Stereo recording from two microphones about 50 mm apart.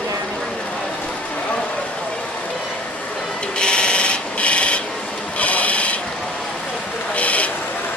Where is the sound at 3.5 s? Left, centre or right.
Centre.